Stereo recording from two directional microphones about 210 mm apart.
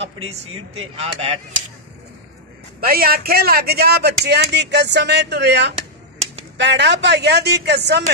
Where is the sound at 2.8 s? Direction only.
45° right (ahead or behind).